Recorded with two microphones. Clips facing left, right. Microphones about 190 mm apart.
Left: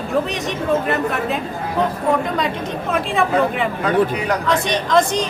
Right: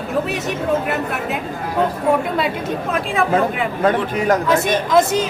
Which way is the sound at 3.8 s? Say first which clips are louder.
Right 1 dB; 45° right (ahead or behind).